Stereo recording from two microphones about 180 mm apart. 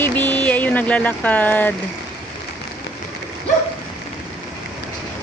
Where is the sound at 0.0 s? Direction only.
10° left (ahead or behind).